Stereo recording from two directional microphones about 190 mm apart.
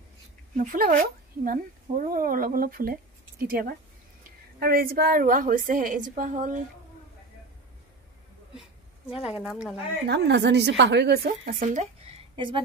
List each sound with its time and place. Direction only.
0.6 s a woman's voice: 45° right (ahead or behind)
9.4 s speech: centre (ahead or behind)
10.0 s a woman's voice: 65° right (ahead or behind); by 12.6 s 30° right (ahead or behind)